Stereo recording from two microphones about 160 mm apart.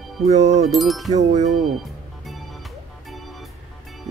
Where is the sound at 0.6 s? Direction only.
Centre (ahead or behind).